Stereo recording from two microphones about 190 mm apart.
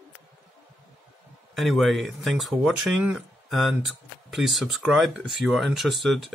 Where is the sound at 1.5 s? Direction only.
Centre (ahead or behind).